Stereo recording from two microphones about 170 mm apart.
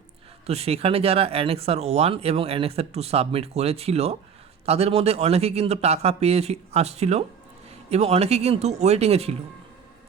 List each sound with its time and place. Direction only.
0.4 s speech: 35° right (ahead or behind)